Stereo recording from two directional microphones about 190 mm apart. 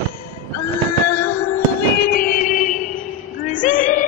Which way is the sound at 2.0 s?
50° left (ahead or behind).